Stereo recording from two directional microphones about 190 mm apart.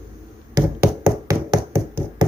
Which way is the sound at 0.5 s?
15° right (ahead or behind).